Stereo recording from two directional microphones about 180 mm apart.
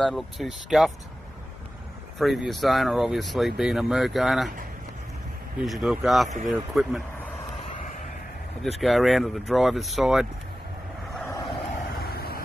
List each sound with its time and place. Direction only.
0.0 s speech: centre (ahead or behind)
2.1 s speech: centre (ahead or behind)
5.6 s speech: centre (ahead or behind)
7.7 s a sound: 45° left (ahead or behind)
8.7 s speech: centre (ahead or behind)
11.1 s vehicle: 15° left (ahead or behind)
12.0 s vehicle: 60° left (ahead or behind)